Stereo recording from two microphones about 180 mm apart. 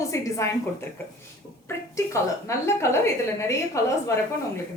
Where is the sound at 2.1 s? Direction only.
15° left (ahead or behind).